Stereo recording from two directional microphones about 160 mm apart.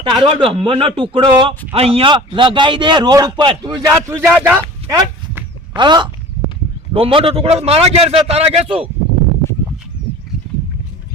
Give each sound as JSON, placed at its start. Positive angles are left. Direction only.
{"t": 0.0, "sound": "a man's voice", "side_deg": -30}
{"t": 4.9, "sound": "a sound", "side_deg": -25}
{"t": 6.9, "sound": "a man's voice", "side_deg": -35}